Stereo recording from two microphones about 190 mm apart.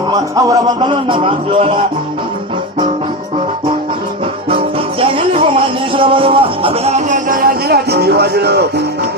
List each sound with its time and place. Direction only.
0.1 s music: 20° right (ahead or behind)
4.4 s music: 30° right (ahead or behind); by 8.6 s 60° right (ahead or behind)